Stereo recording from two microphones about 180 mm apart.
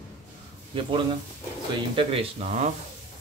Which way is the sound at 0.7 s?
30° right (ahead or behind).